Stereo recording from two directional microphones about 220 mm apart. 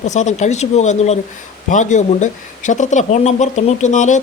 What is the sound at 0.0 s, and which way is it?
Speech, 35° left (ahead or behind).